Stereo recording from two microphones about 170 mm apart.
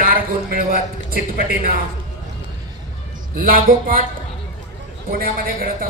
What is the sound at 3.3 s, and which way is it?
Music, 55° right (ahead or behind).